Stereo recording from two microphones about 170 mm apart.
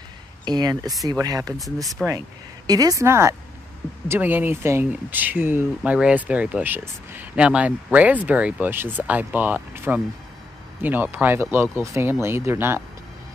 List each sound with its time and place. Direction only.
0.5 s speech: 25° right (ahead or behind)